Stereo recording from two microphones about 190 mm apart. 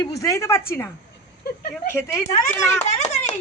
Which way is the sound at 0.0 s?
15° left (ahead or behind).